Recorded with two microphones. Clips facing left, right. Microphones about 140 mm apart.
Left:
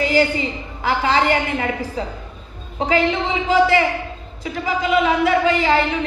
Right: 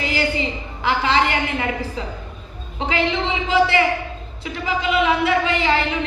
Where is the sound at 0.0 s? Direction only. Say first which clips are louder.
Left 5 dB; 40° left (ahead or behind).